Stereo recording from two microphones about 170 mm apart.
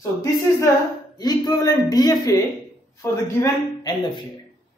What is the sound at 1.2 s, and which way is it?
Speech, 20° left (ahead or behind).